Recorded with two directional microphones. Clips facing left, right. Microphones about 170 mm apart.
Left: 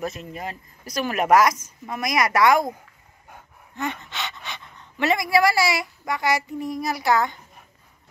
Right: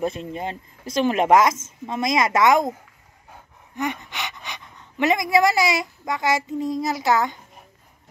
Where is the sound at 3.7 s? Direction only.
15° right (ahead or behind).